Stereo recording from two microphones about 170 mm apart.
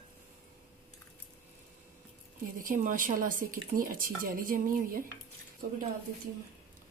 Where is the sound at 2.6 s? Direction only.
50° right (ahead or behind).